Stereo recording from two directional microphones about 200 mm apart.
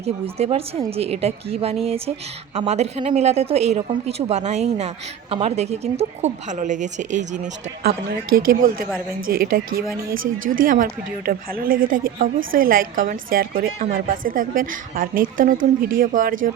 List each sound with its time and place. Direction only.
0.0 s speech: 30° right (ahead or behind)
7.9 s a woman's voice: 50° right (ahead or behind)